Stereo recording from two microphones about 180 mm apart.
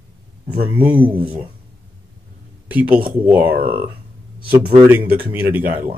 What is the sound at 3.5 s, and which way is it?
Speech, 55° right (ahead or behind).